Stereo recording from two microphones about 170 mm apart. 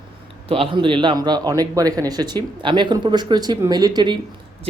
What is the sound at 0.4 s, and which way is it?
Speech, 35° right (ahead or behind).